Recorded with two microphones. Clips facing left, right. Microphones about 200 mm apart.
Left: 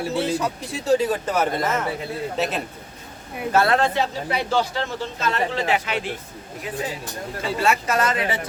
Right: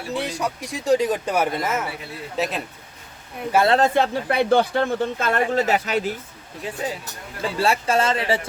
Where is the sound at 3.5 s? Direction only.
10° right (ahead or behind).